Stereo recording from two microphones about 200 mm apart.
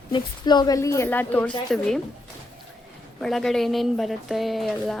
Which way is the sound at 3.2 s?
Centre (ahead or behind).